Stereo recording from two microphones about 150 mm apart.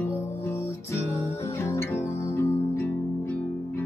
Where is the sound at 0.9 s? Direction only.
20° left (ahead or behind).